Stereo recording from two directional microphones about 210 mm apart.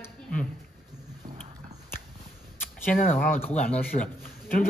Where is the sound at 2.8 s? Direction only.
5° left (ahead or behind).